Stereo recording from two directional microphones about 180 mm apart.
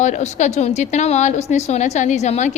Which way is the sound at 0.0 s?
40° left (ahead or behind).